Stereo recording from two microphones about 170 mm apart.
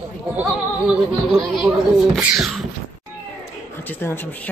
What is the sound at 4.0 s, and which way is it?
Music, 15° left (ahead or behind).